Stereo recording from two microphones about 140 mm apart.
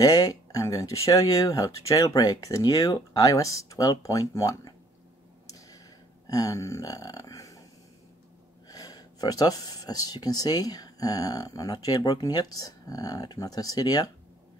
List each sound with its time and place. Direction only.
0.0 s speech: 25° left (ahead or behind)
6.2 s a sound: 25° left (ahead or behind)
8.6 s speech: 25° left (ahead or behind)